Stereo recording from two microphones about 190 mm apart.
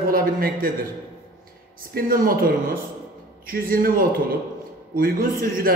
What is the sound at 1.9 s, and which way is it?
A man's voice, 50° right (ahead or behind).